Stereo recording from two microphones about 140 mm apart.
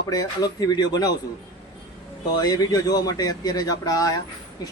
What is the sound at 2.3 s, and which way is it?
Speech, 25° left (ahead or behind).